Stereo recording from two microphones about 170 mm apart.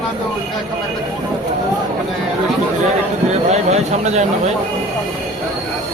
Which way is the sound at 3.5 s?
40° right (ahead or behind).